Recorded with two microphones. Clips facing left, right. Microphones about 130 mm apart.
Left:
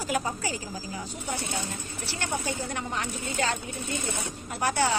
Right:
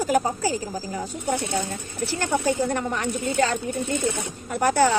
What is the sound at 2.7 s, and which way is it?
Speech, 50° right (ahead or behind).